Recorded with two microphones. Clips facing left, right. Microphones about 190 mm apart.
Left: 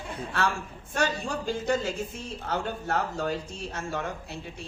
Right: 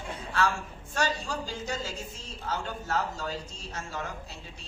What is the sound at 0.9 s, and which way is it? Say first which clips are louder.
A man's voice: left 2 dB; 55° left (ahead or behind).